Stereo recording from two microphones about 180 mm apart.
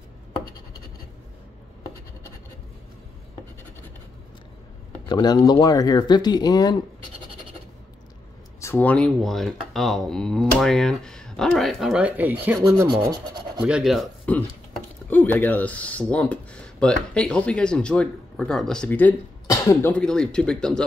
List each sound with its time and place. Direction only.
5.0 s speech: 20° left (ahead or behind)
8.5 s speech: 10° left (ahead or behind); by 12.5 s 10° right (ahead or behind)
12.6 s rub: 20° right (ahead or behind)
13.6 s speech: 5° right (ahead or behind)